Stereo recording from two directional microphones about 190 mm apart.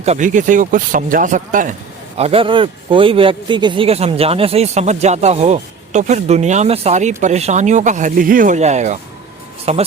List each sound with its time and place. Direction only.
0.0 s speech: 40° right (ahead or behind)
2.1 s speech: 30° right (ahead or behind)